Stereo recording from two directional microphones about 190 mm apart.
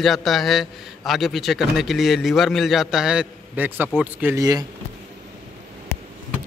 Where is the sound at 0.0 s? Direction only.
Centre (ahead or behind); by 4.6 s 20° right (ahead or behind).